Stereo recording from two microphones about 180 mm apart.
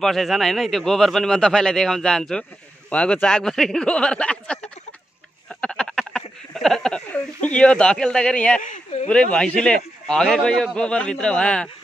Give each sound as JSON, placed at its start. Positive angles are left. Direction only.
{"t": 0.0, "sound": "a man's voice", "side_deg": 0}
{"t": 5.5, "sound": "a sound", "side_deg": 5}
{"t": 8.6, "sound": "speech", "side_deg": 45}
{"t": 9.1, "sound": "a man's voice", "side_deg": 5}